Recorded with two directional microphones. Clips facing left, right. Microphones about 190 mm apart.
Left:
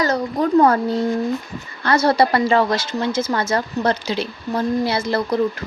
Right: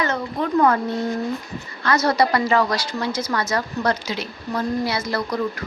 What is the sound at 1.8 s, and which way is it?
A woman's voice, 30° left (ahead or behind).